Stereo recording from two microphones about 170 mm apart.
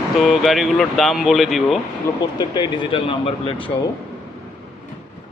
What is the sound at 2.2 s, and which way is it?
Speech, 25° left (ahead or behind).